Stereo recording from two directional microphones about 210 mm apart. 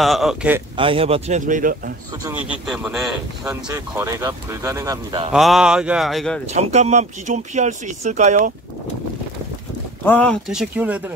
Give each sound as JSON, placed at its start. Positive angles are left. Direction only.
{"t": 0.0, "sound": "speech", "side_deg": 0}
{"t": 0.7, "sound": "speech", "side_deg": -25}
{"t": 2.3, "sound": "speech", "side_deg": -5}
{"t": 3.4, "sound": "speech", "side_deg": -15}
{"t": 5.3, "sound": "speech", "side_deg": 0}
{"t": 6.5, "sound": "speech", "side_deg": -30}
{"t": 10.0, "sound": "speech", "side_deg": 5}